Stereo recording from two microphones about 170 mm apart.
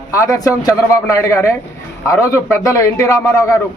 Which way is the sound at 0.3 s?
20° left (ahead or behind).